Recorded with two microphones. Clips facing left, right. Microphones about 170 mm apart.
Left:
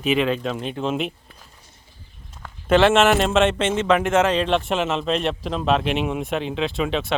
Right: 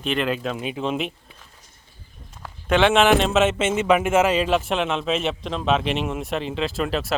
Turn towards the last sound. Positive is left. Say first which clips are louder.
# left 1 dB
turn(degrees=0)  # may be behind; listen again after turning